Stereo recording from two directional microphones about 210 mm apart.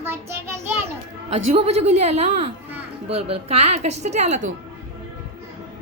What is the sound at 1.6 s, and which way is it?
A woman's voice, 30° right (ahead or behind).